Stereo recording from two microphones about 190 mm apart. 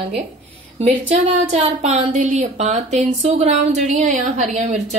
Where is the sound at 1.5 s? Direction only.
35° right (ahead or behind).